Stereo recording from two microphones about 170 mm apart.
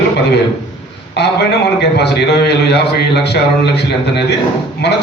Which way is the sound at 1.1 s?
75° left (ahead or behind).